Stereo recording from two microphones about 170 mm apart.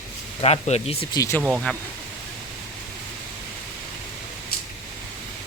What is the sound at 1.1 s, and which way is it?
Speech, 20° left (ahead or behind).